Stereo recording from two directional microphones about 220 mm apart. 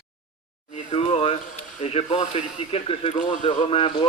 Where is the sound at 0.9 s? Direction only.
30° left (ahead or behind).